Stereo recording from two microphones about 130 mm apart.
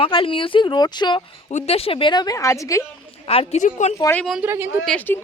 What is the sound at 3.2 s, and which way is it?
Speech, 50° left (ahead or behind).